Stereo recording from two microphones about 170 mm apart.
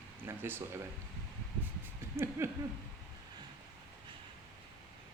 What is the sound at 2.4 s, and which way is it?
Speech, 15° right (ahead or behind).